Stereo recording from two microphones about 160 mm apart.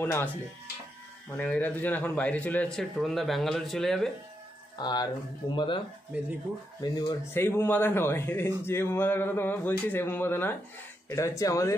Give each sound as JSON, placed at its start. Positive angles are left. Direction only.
{"t": 0.0, "sound": "speech", "side_deg": 10}
{"t": 1.3, "sound": "a man's voice", "side_deg": 10}
{"t": 4.7, "sound": "speech", "side_deg": 25}
{"t": 6.1, "sound": "speech", "side_deg": -10}
{"t": 6.8, "sound": "speech", "side_deg": 25}
{"t": 7.3, "sound": "speech", "side_deg": 15}